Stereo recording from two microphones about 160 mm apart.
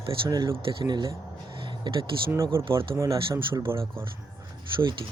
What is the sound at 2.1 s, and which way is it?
Speech, 35° right (ahead or behind).